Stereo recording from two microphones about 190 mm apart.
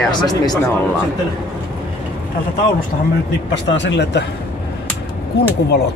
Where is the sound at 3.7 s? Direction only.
70° left (ahead or behind).